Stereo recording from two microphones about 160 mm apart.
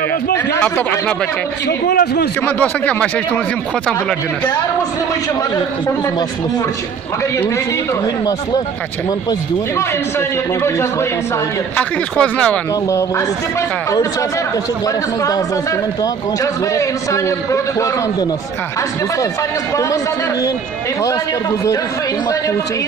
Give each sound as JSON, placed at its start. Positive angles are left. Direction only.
{"t": 0.5, "sound": "speech", "side_deg": 10}
{"t": 1.7, "sound": "a man's voice", "side_deg": 90}
{"t": 2.4, "sound": "speech", "side_deg": 10}
{"t": 11.7, "sound": "speech", "side_deg": 5}
{"t": 16.7, "sound": "a man's voice", "side_deg": 20}